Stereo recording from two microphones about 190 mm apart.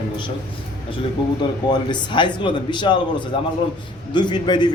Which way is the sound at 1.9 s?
25° left (ahead or behind).